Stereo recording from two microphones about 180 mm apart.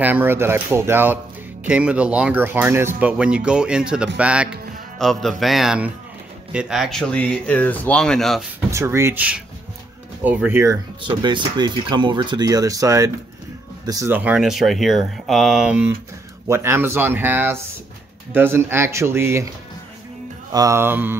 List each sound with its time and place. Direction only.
0.0 s speech: 10° right (ahead or behind)
8.6 s speech: 15° right (ahead or behind)
11.0 s speech: 25° right (ahead or behind)
20.5 s speech: 15° right (ahead or behind)